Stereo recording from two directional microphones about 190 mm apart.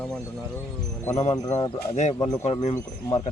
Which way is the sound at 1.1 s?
35° left (ahead or behind).